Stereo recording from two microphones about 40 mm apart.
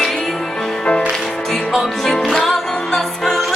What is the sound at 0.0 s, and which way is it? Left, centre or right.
Music, centre.